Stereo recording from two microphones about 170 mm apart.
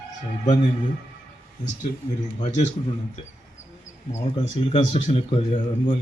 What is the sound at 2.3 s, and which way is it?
Speech, 45° left (ahead or behind).